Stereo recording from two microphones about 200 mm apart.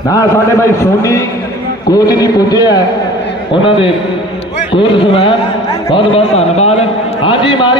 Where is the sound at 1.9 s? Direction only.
20° left (ahead or behind).